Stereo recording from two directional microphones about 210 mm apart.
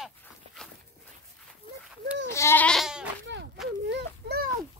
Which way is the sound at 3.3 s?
60° right (ahead or behind).